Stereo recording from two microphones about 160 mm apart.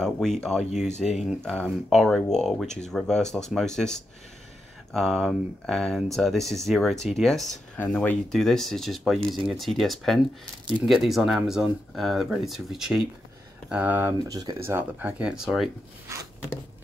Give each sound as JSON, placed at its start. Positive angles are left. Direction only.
{"t": 0.0, "sound": "speech", "side_deg": 5}
{"t": 0.7, "sound": "speech", "side_deg": 45}
{"t": 1.4, "sound": "speech", "side_deg": 5}
{"t": 14.1, "sound": "speech", "side_deg": -25}
{"t": 14.7, "sound": "speech", "side_deg": -10}